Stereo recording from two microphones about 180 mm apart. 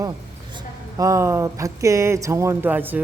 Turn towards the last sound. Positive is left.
turn(degrees=-10)  # may be behind; listen again after turning